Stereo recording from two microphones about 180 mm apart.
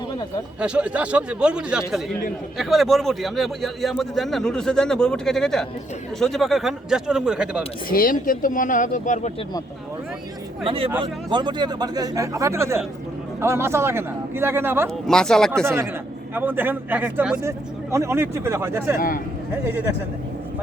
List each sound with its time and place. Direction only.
0.6 s a man's voice: 5° right (ahead or behind)
7.9 s speech: 55° left (ahead or behind)
10.7 s a man's voice: 30° right (ahead or behind); by 14.8 s 10° right (ahead or behind)
15.0 s speech: 5° left (ahead or behind)
15.6 s a man's voice: 15° right (ahead or behind)
18.9 s speech: 50° left (ahead or behind)
19.6 s a man's voice: 15° right (ahead or behind)